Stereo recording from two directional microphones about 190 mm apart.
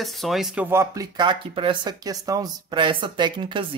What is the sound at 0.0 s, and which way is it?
Speech, centre (ahead or behind).